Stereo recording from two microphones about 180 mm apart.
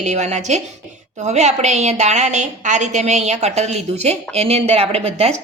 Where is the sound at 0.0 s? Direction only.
40° right (ahead or behind).